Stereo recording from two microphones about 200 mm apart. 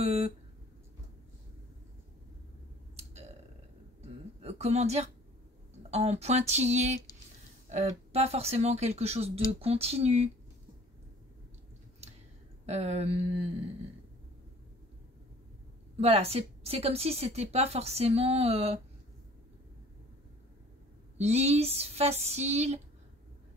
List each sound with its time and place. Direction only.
0.0 s speech: 30° right (ahead or behind)
4.4 s a woman's voice: 30° right (ahead or behind)
12.6 s a woman's voice: 30° right (ahead or behind)
16.0 s a woman's voice: 30° right (ahead or behind)
21.2 s a woman's voice: 35° right (ahead or behind)